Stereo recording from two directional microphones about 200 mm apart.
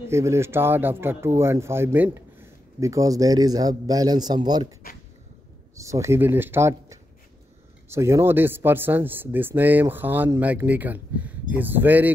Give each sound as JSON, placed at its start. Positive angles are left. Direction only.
{"t": 0.1, "sound": "speech", "side_deg": -15}
{"t": 5.8, "sound": "speech", "side_deg": -15}